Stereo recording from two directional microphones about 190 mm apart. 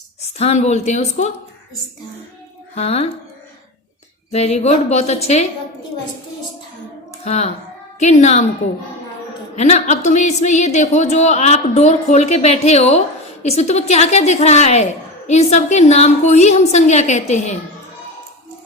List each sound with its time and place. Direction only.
0.2 s a woman's voice: 35° left (ahead or behind)
2.7 s a woman's voice: 30° left (ahead or behind)
4.3 s a woman's voice: 35° left (ahead or behind)
7.3 s a woman's voice: 35° left (ahead or behind)
9.6 s a woman's voice: 35° left (ahead or behind)